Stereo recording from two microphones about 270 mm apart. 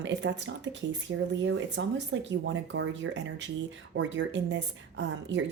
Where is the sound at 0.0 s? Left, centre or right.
Right.